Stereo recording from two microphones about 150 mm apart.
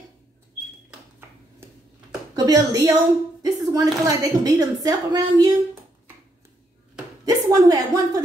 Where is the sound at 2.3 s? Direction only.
25° right (ahead or behind).